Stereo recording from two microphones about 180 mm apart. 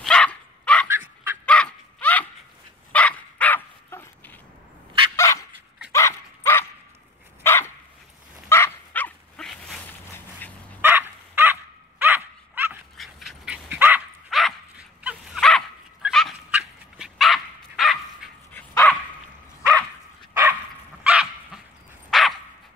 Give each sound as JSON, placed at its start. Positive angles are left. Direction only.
{"t": 0.0, "sound": "dog", "side_deg": 5}
{"t": 0.8, "sound": "fowl", "side_deg": -10}
{"t": 1.4, "sound": "a sound", "side_deg": 5}
{"t": 2.9, "sound": "dog", "side_deg": 5}
{"t": 10.8, "sound": "dog", "side_deg": -10}
{"t": 12.9, "sound": "dog", "side_deg": 0}
{"t": 21.0, "sound": "dog", "side_deg": -5}